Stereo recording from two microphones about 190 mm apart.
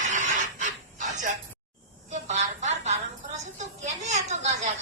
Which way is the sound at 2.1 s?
40° right (ahead or behind).